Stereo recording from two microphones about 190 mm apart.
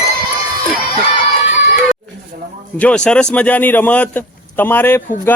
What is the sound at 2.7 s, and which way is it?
Speech, 5° left (ahead or behind).